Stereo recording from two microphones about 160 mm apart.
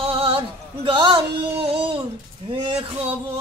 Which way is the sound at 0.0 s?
30° right (ahead or behind).